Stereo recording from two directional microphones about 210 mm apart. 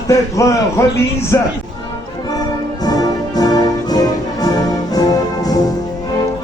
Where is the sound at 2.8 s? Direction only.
20° left (ahead or behind).